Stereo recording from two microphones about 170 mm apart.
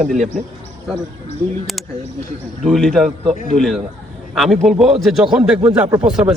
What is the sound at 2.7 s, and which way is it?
Speech, centre (ahead or behind).